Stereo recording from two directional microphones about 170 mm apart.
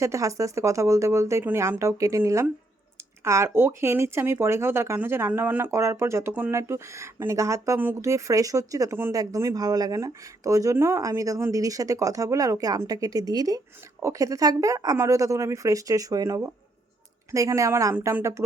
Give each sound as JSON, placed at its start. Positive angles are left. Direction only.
{"t": 0.0, "sound": "speech", "side_deg": -20}